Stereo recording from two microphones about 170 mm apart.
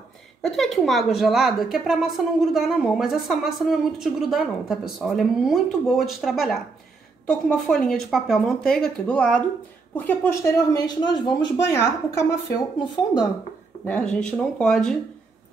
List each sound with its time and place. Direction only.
0.4 s a woman's voice: centre (ahead or behind); by 12.6 s 20° left (ahead or behind)
13.8 s a woman's voice: 10° left (ahead or behind)